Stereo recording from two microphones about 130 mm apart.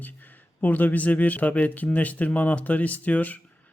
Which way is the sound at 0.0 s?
15° left (ahead or behind).